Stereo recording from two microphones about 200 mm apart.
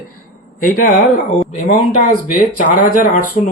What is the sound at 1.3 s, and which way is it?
Speech, 35° left (ahead or behind).